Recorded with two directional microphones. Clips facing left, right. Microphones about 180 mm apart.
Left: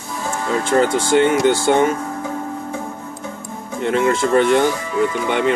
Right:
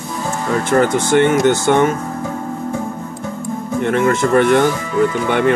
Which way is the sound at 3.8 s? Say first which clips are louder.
Right 1 dB; 50° right (ahead or behind).